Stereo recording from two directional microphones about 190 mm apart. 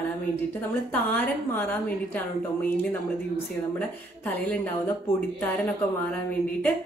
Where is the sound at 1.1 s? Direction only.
10° left (ahead or behind).